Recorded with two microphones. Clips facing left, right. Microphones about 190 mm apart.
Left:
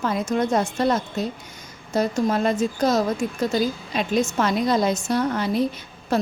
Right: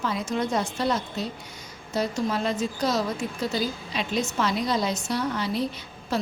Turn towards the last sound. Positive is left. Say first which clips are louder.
# left 5 dB
turn(degrees=50)  # may be behind; listen again after turning